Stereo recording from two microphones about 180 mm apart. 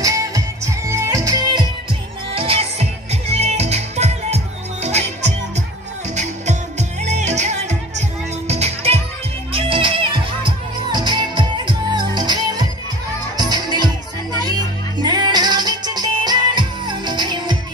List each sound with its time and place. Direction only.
0.0 s music: 20° right (ahead or behind)